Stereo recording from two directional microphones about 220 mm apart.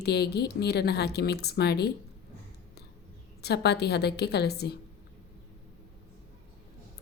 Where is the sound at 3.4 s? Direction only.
50° left (ahead or behind).